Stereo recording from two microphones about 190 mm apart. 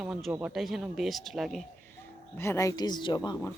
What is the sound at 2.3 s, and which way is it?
Speech, 15° left (ahead or behind).